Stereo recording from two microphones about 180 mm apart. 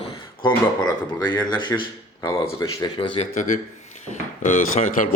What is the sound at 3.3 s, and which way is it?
Speech, 45° left (ahead or behind).